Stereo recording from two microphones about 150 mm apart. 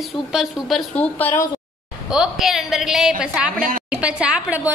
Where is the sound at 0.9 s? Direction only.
10° left (ahead or behind).